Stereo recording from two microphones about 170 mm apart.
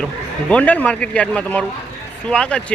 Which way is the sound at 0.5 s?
10° left (ahead or behind).